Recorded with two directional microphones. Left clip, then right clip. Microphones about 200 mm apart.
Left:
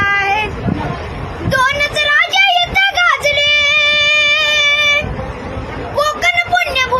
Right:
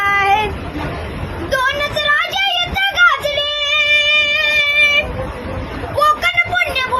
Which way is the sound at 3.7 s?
20° left (ahead or behind).